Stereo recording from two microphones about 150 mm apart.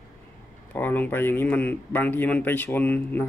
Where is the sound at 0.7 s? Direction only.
10° left (ahead or behind).